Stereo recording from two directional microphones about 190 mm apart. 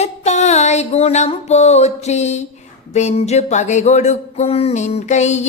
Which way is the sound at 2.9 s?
35° left (ahead or behind).